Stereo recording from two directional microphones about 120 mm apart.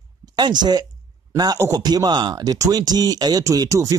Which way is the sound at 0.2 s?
35° right (ahead or behind).